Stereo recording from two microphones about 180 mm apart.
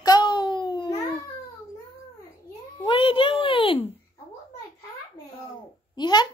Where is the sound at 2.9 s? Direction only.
30° left (ahead or behind).